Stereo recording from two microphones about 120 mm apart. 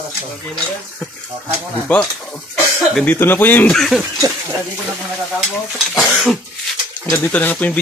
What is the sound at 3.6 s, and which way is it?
Stir, centre (ahead or behind).